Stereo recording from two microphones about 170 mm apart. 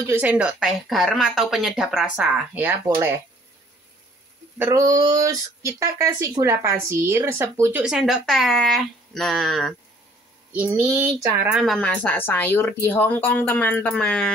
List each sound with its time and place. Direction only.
0.0 s a woman's voice: 10° right (ahead or behind)
4.6 s speech: 15° right (ahead or behind)
7.8 s a woman's voice: centre (ahead or behind)
10.5 s speech: 10° right (ahead or behind)
11.5 s a woman's voice: centre (ahead or behind)